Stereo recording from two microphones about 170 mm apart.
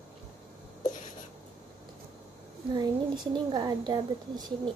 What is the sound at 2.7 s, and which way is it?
A woman's voice, 25° right (ahead or behind).